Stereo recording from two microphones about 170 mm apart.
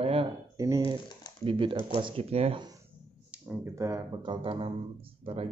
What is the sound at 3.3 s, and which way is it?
Speech, 15° right (ahead or behind).